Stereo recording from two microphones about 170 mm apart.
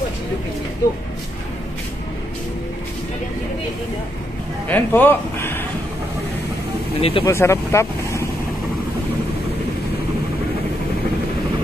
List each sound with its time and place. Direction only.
4.6 s speech: 10° left (ahead or behind)
7.0 s speech: 35° left (ahead or behind)
7.2 s speech: 15° left (ahead or behind)